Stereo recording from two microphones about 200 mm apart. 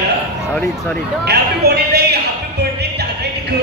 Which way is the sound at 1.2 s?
55° right (ahead or behind).